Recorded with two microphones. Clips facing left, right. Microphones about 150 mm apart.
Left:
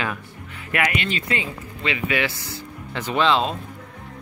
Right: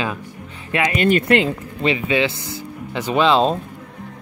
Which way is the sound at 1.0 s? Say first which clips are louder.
Right 10 dB; 55° right (ahead or behind).